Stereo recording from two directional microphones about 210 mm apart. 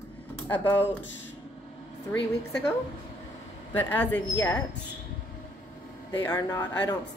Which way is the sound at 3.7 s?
10° left (ahead or behind).